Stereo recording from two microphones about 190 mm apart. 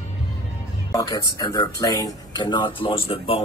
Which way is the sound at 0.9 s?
20° left (ahead or behind).